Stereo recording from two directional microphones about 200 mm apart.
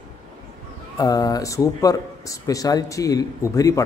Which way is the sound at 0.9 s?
20° left (ahead or behind).